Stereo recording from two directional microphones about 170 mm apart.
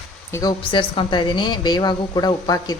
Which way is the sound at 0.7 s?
30° left (ahead or behind).